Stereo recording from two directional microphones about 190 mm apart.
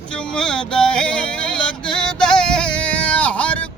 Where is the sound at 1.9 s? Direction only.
5° left (ahead or behind).